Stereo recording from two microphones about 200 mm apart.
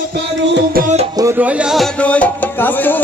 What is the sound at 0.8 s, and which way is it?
Music, 45° right (ahead or behind).